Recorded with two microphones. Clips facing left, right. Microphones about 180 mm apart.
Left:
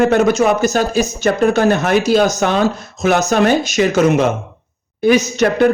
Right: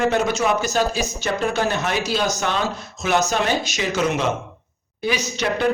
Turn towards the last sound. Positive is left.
turn(degrees=50)  # may be behind; listen again after turning